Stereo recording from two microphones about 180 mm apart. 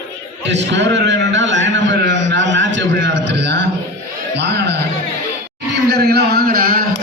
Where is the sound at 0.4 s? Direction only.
75° right (ahead or behind); by 6.8 s 55° right (ahead or behind).